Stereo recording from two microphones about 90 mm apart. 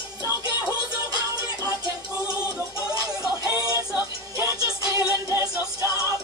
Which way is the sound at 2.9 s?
45° right (ahead or behind).